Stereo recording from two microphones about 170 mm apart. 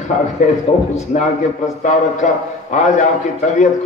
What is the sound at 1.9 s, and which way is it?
A man's voice, 45° left (ahead or behind).